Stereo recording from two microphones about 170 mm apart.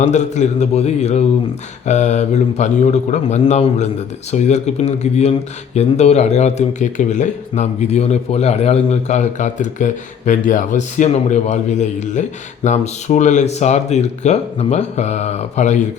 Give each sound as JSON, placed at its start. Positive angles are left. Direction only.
{"t": 0.0, "sound": "speech", "side_deg": 45}